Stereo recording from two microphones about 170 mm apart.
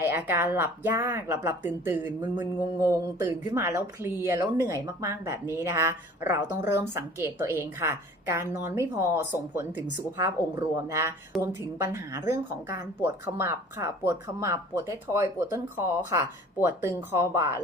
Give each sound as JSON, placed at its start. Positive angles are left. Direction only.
{"t": 0.0, "sound": "speech", "side_deg": -10}